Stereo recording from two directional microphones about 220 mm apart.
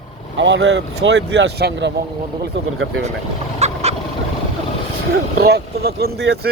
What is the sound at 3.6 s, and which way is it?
Fowl, 30° right (ahead or behind).